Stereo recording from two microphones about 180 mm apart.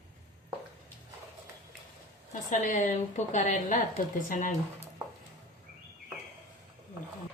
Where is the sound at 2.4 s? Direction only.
40° left (ahead or behind).